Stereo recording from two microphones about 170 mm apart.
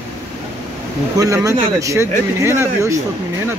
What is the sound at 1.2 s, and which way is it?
Speech, 20° right (ahead or behind).